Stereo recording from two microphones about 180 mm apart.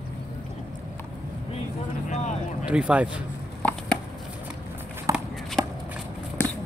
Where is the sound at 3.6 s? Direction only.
5° left (ahead or behind).